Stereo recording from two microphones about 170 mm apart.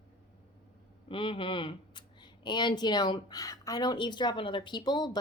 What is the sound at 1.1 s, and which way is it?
Speech, 30° left (ahead or behind).